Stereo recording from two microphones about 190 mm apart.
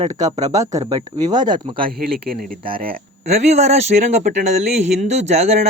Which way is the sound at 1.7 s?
50° right (ahead or behind).